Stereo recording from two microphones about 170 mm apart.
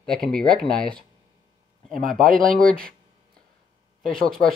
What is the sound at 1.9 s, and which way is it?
Speech, 55° right (ahead or behind).